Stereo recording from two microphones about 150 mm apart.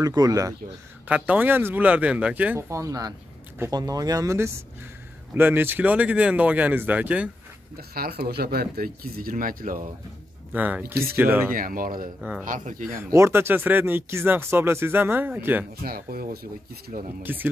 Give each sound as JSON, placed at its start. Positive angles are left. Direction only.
{"t": 0.0, "sound": "speech", "side_deg": -25}
{"t": 1.0, "sound": "speech", "side_deg": -10}
{"t": 7.7, "sound": "speech", "side_deg": -85}
{"t": 10.5, "sound": "speech", "side_deg": -10}
{"t": 11.5, "sound": "speech", "side_deg": -70}
{"t": 12.2, "sound": "speech", "side_deg": -5}
{"t": 12.4, "sound": "speech", "side_deg": -60}
{"t": 13.1, "sound": "speech", "side_deg": -15}
{"t": 15.8, "sound": "speech", "side_deg": -75}
{"t": 17.2, "sound": "speech", "side_deg": -15}